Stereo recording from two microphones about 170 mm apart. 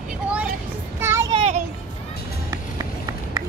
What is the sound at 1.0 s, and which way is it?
Child singing, 15° right (ahead or behind).